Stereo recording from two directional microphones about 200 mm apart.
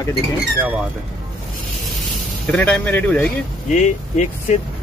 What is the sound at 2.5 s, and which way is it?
Speech, 5° left (ahead or behind).